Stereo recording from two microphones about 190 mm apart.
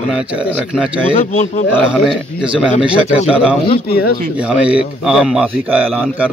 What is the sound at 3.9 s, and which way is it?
Speech, 55° left (ahead or behind).